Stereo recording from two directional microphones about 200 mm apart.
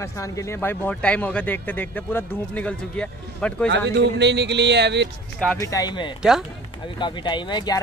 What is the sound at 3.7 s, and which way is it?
A man's voice, 60° right (ahead or behind).